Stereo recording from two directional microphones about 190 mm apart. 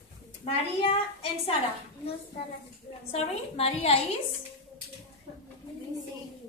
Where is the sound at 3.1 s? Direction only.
35° left (ahead or behind).